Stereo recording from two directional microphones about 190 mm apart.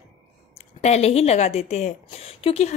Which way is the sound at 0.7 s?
35° left (ahead or behind).